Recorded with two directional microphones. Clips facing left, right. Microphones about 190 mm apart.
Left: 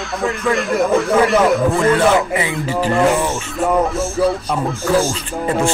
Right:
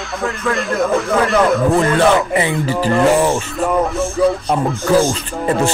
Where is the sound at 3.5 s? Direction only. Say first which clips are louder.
Even; centre (ahead or behind).